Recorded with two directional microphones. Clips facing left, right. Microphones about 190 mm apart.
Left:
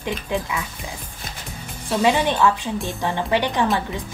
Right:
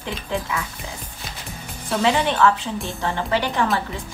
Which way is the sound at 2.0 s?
15° left (ahead or behind).